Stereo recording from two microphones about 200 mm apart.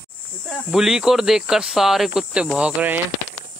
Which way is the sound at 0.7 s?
5° right (ahead or behind).